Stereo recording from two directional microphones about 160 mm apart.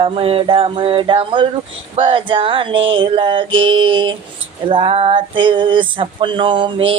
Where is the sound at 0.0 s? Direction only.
35° right (ahead or behind).